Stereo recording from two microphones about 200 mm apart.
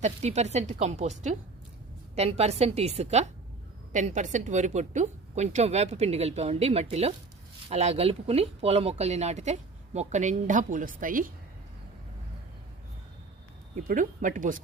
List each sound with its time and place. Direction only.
0.0 s speech: 35° right (ahead or behind)
2.1 s speech: 30° right (ahead or behind)
13.8 s speech: 40° right (ahead or behind)